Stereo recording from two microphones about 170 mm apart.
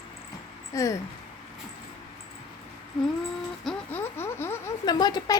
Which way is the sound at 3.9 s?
15° left (ahead or behind).